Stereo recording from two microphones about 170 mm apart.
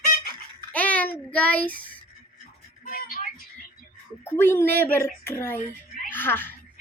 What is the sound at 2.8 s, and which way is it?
Music, 55° left (ahead or behind).